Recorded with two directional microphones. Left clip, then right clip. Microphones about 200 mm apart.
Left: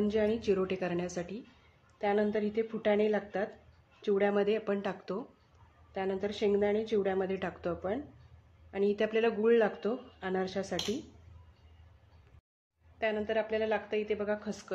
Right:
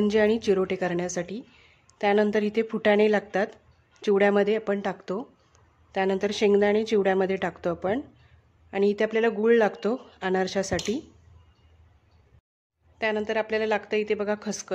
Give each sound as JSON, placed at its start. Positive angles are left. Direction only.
{"t": 0.0, "sound": "speech", "side_deg": -40}
{"t": 5.9, "sound": "speech", "side_deg": -40}
{"t": 13.0, "sound": "speech", "side_deg": -40}